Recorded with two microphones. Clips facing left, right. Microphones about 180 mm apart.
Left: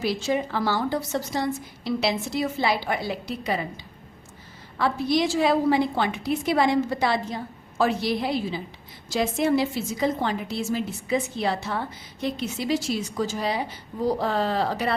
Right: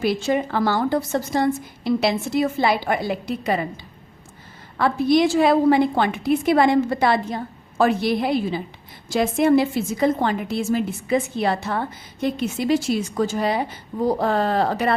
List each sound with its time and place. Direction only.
0.0 s a woman's voice: 55° right (ahead or behind)
4.8 s a woman's voice: 55° right (ahead or behind)